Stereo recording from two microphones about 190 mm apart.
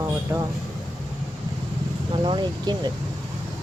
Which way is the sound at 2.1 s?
25° right (ahead or behind).